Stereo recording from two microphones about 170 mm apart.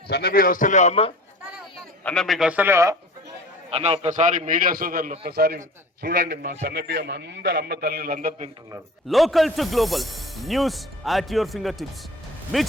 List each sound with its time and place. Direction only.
0.1 s a man's voice: 65° left (ahead or behind); by 1.1 s 40° left (ahead or behind)
2.0 s speech: centre (ahead or behind); by 2.9 s 15° right (ahead or behind)
3.7 s a man's voice: 35° right (ahead or behind); by 5.1 s 55° right (ahead or behind)
5.2 s a man's voice: 65° right (ahead or behind)
9.0 s speech: centre (ahead or behind)